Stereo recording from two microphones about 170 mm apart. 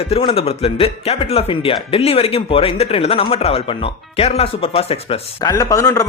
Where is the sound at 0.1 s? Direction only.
35° left (ahead or behind).